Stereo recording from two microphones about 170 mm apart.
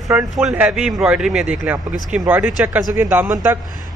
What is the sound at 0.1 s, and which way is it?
A man's voice, 5° right (ahead or behind).